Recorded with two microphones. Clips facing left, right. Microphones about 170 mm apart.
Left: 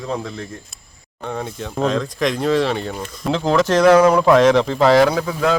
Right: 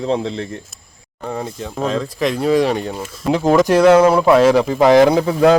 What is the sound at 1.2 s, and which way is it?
Speech, 5° right (ahead or behind).